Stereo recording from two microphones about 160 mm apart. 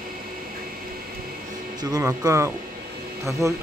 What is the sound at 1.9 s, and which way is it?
Speech, 20° right (ahead or behind).